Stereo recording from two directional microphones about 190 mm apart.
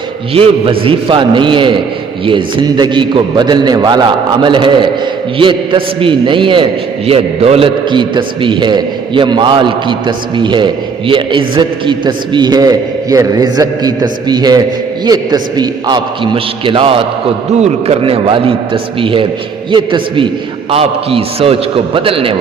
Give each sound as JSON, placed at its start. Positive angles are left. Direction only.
{"t": 0.3, "sound": "a man's voice", "side_deg": -30}